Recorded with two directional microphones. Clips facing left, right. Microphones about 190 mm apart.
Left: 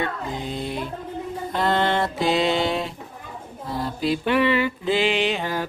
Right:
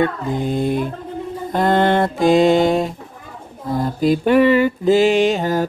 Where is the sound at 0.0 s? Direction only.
50° right (ahead or behind).